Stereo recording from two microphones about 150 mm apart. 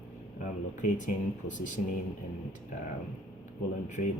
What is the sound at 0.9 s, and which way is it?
Speech, 55° left (ahead or behind).